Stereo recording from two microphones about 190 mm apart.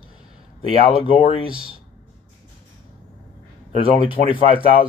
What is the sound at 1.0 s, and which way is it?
Speech, 25° left (ahead or behind).